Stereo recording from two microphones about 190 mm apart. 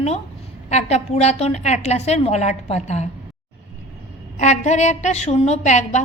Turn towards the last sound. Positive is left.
turn(degrees=40)  # may be behind; listen again after turning